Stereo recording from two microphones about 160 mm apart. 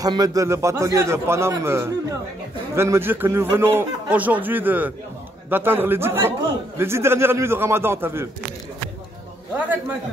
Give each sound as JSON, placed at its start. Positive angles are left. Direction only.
{"t": 0.0, "sound": "a man's voice", "side_deg": -25}